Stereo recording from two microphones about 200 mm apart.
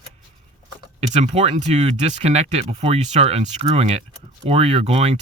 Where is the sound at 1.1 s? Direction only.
35° right (ahead or behind).